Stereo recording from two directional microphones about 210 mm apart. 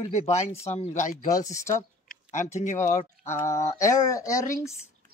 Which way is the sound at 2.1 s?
35° left (ahead or behind).